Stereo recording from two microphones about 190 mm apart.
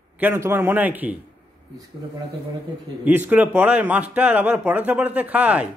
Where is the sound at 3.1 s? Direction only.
10° right (ahead or behind).